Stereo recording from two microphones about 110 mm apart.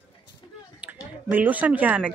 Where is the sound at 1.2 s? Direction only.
15° right (ahead or behind).